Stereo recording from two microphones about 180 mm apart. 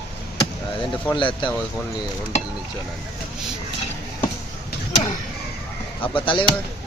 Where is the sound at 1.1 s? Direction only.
25° left (ahead or behind).